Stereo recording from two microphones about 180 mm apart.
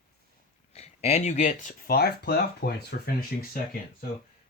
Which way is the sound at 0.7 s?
35° left (ahead or behind).